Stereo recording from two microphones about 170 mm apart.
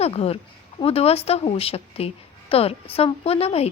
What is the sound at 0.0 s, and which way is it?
A woman's voice, 35° left (ahead or behind).